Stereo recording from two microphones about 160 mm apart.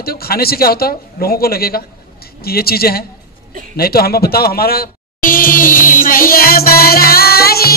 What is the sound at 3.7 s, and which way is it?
Music, 70° left (ahead or behind).